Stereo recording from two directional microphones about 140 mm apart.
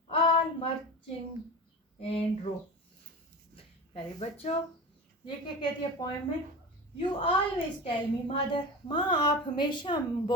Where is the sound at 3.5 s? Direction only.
45° left (ahead or behind).